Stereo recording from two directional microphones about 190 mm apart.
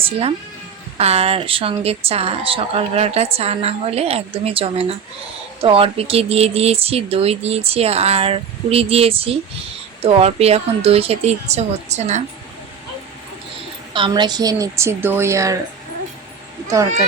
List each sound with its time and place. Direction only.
0.0 s speech: 30° right (ahead or behind)
13.9 s a woman's voice: 25° right (ahead or behind)